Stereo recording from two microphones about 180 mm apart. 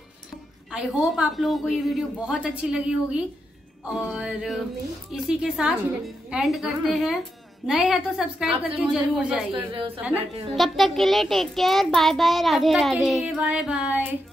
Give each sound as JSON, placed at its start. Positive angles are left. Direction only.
{"t": 0.7, "sound": "child singing", "side_deg": 0}
{"t": 9.7, "sound": "a woman's voice", "side_deg": -30}
{"t": 10.5, "sound": "child singing", "side_deg": 0}